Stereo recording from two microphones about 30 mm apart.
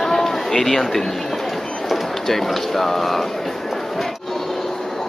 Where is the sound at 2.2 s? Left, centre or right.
Centre.